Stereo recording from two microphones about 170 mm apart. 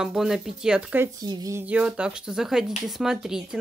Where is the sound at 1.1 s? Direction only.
20° right (ahead or behind).